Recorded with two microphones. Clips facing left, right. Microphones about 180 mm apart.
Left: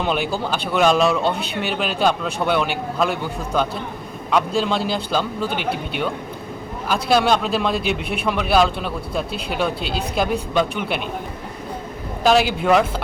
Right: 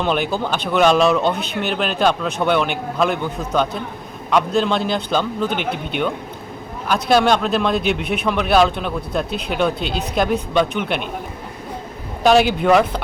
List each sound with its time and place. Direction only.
0.0 s a man's voice: 5° left (ahead or behind)
12.2 s a man's voice: centre (ahead or behind)